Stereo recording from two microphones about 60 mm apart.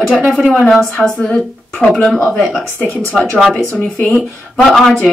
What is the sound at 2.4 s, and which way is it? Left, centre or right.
Speech, centre.